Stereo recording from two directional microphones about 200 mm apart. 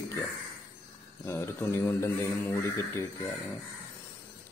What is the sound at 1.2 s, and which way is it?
Speech, 10° left (ahead or behind).